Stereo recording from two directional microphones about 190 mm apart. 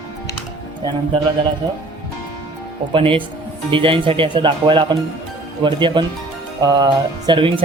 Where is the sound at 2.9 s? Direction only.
30° right (ahead or behind).